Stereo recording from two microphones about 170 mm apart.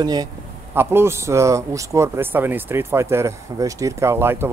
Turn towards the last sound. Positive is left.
turn(degrees=-15)  # may be behind; listen again after turning